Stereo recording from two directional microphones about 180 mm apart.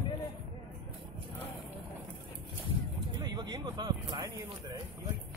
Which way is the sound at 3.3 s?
25° right (ahead or behind).